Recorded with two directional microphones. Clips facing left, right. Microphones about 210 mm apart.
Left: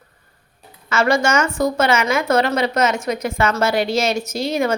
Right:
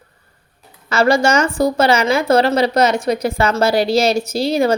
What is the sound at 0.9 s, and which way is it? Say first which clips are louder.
A woman's voice: right 3 dB; 35° right (ahead or behind).